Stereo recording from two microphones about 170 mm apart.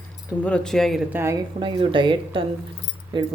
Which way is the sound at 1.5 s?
30° right (ahead or behind).